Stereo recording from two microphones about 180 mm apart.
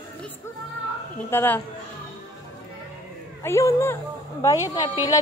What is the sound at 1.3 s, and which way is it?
Speech, 10° left (ahead or behind).